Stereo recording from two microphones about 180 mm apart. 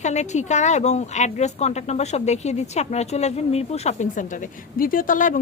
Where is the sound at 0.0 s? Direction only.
40° left (ahead or behind).